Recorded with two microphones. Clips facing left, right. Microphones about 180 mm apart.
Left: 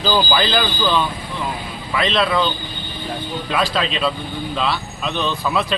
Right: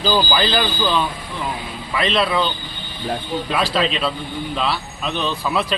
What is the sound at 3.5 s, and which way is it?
Speech, centre (ahead or behind).